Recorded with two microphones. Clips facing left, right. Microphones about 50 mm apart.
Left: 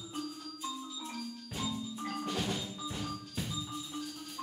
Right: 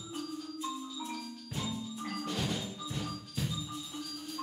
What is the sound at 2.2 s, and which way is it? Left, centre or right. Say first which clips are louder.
Music: even; centre.